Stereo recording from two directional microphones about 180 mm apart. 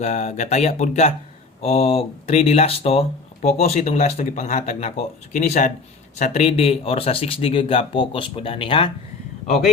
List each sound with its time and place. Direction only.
0.0 s speech: 40° left (ahead or behind)